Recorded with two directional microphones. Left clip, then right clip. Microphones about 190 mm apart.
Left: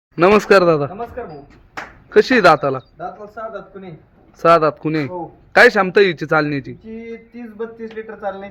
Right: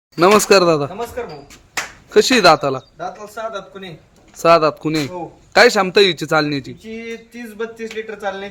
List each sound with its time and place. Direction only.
0.2 s a man's voice: 10° right (ahead or behind)
2.0 s a man's voice: 5° right (ahead or behind)
4.4 s a man's voice: 5° right (ahead or behind)
6.9 s a sound: 20° right (ahead or behind)